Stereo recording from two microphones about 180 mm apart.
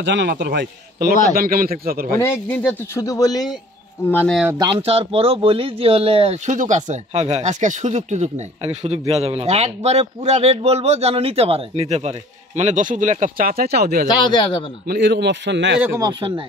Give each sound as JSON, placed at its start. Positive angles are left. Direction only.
{"t": 0.0, "sound": "a man's voice", "side_deg": -80}
{"t": 2.1, "sound": "speech", "side_deg": 10}
{"t": 4.1, "sound": "speech", "side_deg": 10}
{"t": 4.5, "sound": "a man's voice", "side_deg": -25}
{"t": 16.0, "sound": "speech", "side_deg": -25}